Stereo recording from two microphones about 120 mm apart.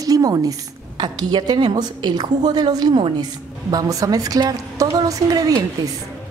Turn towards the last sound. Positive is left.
turn(degrees=-30)  # may be behind; listen again after turning